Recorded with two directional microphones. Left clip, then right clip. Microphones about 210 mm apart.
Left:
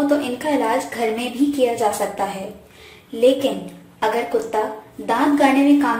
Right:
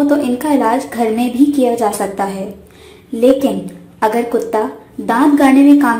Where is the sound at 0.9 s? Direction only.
20° right (ahead or behind).